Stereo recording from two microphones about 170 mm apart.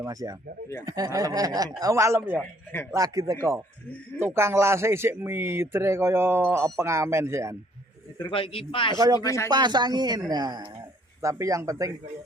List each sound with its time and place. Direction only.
0.0 s speech: 20° right (ahead or behind)
8.3 s a man's voice: 30° left (ahead or behind)
9.0 s speech: 20° right (ahead or behind)
9.2 s speech: 15° left (ahead or behind)
9.5 s speech: 25° right (ahead or behind)